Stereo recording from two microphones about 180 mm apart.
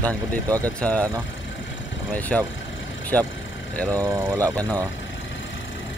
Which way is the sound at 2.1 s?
10° left (ahead or behind).